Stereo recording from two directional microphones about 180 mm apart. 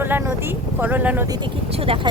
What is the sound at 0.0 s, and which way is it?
Speech, 10° right (ahead or behind).